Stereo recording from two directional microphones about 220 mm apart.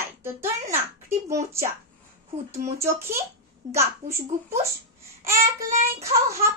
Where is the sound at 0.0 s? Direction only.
10° right (ahead or behind).